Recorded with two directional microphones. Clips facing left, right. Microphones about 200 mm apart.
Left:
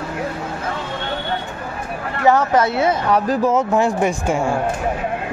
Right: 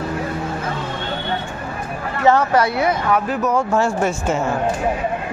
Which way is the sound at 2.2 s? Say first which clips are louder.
Even; 15° left (ahead or behind).